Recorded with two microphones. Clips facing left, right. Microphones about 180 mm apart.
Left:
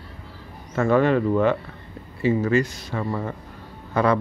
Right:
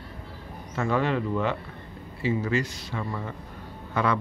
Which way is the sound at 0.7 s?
55° left (ahead or behind).